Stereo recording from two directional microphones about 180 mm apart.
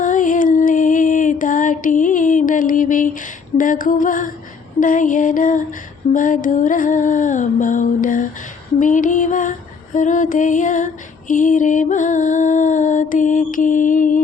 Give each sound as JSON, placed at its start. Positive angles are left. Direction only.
{"t": 0.0, "sound": "music", "side_deg": 45}
{"t": 4.8, "sound": "female singing", "side_deg": 45}